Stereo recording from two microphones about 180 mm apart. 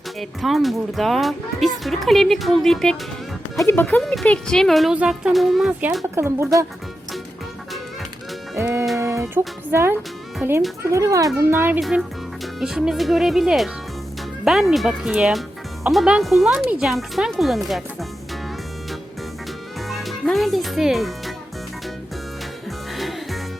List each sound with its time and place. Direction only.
0.2 s speech: centre (ahead or behind)
6.1 s speech: 15° right (ahead or behind)
8.5 s music: 15° right (ahead or behind)
9.4 s speech: 15° right (ahead or behind)
11.8 s speech: centre (ahead or behind)
19.9 s music: centre (ahead or behind)
23.0 s music: centre (ahead or behind)